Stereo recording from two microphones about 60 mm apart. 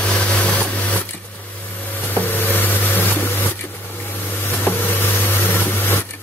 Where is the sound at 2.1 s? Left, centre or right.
Left.